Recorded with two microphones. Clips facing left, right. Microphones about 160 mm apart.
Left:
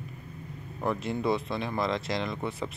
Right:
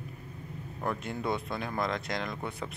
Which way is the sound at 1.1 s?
Centre (ahead or behind).